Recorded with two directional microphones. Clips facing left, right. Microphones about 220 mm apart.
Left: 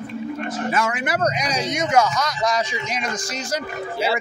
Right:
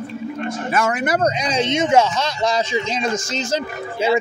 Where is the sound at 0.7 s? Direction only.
45° right (ahead or behind).